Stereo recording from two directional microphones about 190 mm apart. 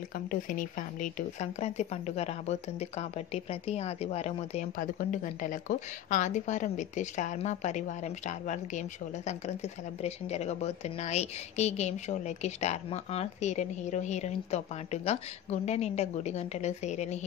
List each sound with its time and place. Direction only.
0.3 s speech: 45° left (ahead or behind)